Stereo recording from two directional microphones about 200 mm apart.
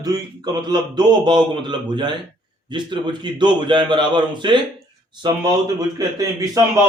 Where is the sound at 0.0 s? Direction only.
20° right (ahead or behind).